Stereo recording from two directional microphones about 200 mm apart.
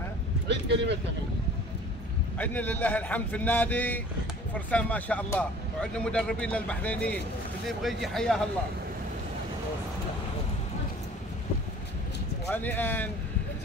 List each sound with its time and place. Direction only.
0.5 s a sound: 60° right (ahead or behind)
2.3 s speech: 10° left (ahead or behind)
12.4 s speech: 10° left (ahead or behind)